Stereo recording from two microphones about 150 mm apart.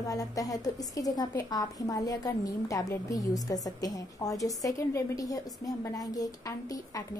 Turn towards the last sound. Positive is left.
turn(degrees=25)  # may be behind; listen again after turning